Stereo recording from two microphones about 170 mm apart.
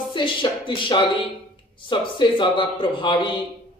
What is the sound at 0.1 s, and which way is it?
Speech, 30° left (ahead or behind).